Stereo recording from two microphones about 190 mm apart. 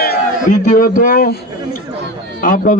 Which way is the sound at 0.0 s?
50° left (ahead or behind).